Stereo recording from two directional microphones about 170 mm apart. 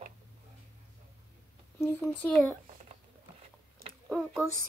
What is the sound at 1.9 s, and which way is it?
Speech, 15° left (ahead or behind).